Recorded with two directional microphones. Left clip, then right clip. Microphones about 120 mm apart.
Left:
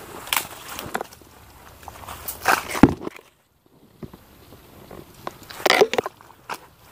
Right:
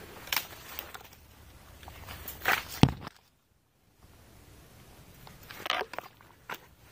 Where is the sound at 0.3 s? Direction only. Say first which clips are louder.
Left 8 dB; 60° right (ahead or behind).